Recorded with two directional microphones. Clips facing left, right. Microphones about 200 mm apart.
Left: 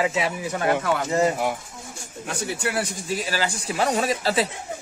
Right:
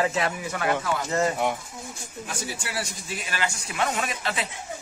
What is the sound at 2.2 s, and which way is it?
Speech, 60° left (ahead or behind).